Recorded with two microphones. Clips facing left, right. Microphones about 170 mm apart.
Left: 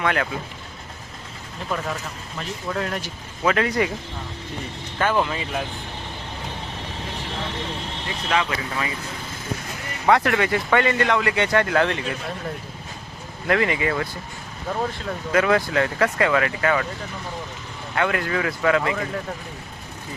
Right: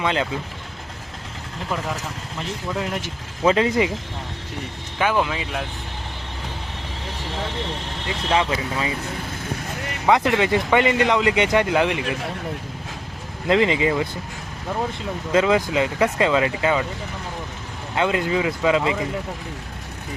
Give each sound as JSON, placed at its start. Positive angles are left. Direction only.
{"t": 0.0, "sound": "speech", "side_deg": -20}
{"t": 2.7, "sound": "speech", "side_deg": -15}
{"t": 4.9, "sound": "speech", "side_deg": -5}
{"t": 8.3, "sound": "speech", "side_deg": -25}
{"t": 10.1, "sound": "speech", "side_deg": -20}
{"t": 13.5, "sound": "speech", "side_deg": -20}
{"t": 15.3, "sound": "speech", "side_deg": -20}
{"t": 17.9, "sound": "speech", "side_deg": -20}